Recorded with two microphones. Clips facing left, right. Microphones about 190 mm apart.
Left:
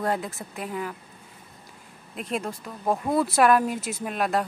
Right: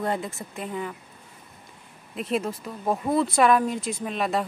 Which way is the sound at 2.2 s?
Centre (ahead or behind).